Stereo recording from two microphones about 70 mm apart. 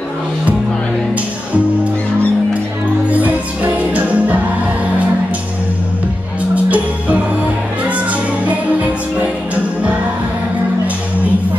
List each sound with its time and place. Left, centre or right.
3.1 s music: right
6.5 s music: right